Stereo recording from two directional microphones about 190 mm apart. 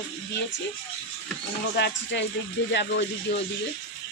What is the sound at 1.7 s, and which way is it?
Speech, 65° left (ahead or behind).